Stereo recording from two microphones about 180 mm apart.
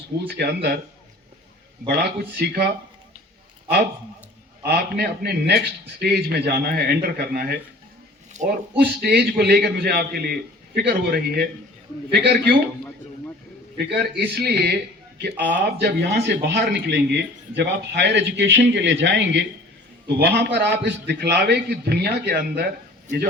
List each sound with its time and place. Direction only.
0.3 s a man's voice: 60° right (ahead or behind)
1.9 s a man's voice: 60° right (ahead or behind)
4.6 s a man's voice: 60° right (ahead or behind)
8.4 s speech: 40° right (ahead or behind)
8.8 s a man's voice: 60° right (ahead or behind)
13.7 s a man's voice: 60° right (ahead or behind)